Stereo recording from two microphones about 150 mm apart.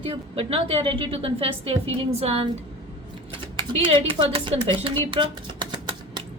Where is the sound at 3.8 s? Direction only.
35° right (ahead or behind).